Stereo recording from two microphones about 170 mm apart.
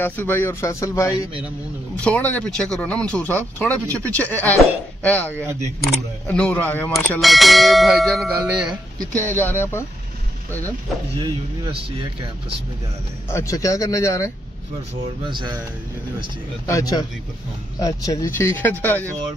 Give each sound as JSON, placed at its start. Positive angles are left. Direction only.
{"t": 0.0, "sound": "speech", "side_deg": 10}
{"t": 2.0, "sound": "speech", "side_deg": 5}
{"t": 9.2, "sound": "speech", "side_deg": 10}
{"t": 11.2, "sound": "speech", "side_deg": -25}
{"t": 13.3, "sound": "speech", "side_deg": 15}
{"t": 15.2, "sound": "speech", "side_deg": -25}
{"t": 16.6, "sound": "speech", "side_deg": 20}